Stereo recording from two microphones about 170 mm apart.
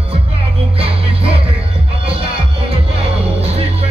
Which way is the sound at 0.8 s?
35° right (ahead or behind).